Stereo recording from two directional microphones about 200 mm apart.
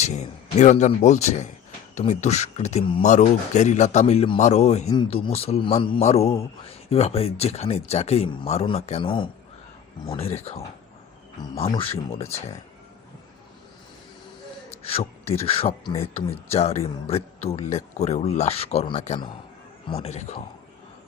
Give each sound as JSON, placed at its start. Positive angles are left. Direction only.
{"t": 0.0, "sound": "speech", "side_deg": 35}
{"t": 14.8, "sound": "a sound", "side_deg": 30}
{"t": 15.3, "sound": "speech", "side_deg": 30}